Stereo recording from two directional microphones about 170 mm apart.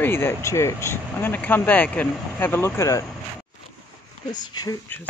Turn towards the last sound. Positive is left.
turn(degrees=25)  # may be behind; listen again after turning